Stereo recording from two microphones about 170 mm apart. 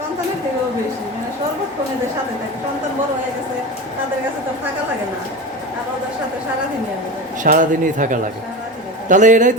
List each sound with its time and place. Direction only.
7.4 s speech: 50° right (ahead or behind)